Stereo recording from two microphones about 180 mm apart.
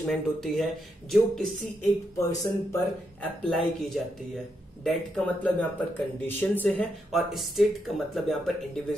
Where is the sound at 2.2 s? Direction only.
15° left (ahead or behind).